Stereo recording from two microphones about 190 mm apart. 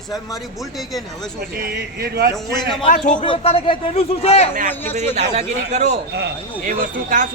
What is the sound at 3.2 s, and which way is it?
Speech, 30° left (ahead or behind).